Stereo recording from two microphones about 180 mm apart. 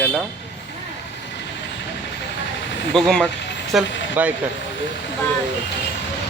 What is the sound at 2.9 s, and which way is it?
Speech, centre (ahead or behind).